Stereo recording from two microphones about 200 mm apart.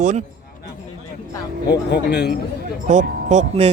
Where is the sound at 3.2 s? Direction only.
40° right (ahead or behind).